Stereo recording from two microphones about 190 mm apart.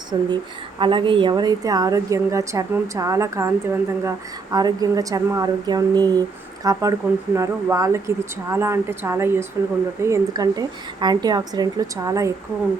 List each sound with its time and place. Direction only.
0.1 s a woman's voice: 20° right (ahead or behind)